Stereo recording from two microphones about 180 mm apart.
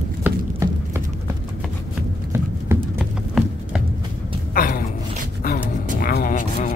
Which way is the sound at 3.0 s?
5° right (ahead or behind).